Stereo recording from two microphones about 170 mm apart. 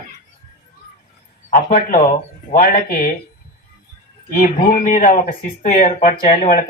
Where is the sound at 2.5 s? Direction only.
55° left (ahead or behind).